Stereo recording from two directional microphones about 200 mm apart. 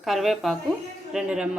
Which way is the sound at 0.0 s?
Centre (ahead or behind).